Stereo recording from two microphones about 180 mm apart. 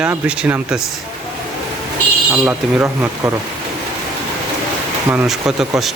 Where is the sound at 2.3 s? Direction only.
10° right (ahead or behind).